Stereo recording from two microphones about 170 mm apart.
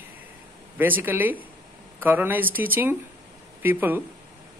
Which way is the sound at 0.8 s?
10° right (ahead or behind).